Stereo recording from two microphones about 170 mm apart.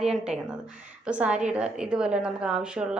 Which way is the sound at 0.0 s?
5° right (ahead or behind).